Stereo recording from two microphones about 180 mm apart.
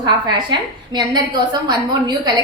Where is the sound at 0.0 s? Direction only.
25° right (ahead or behind).